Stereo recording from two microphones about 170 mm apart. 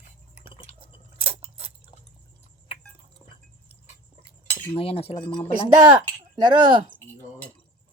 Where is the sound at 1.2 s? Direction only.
35° right (ahead or behind).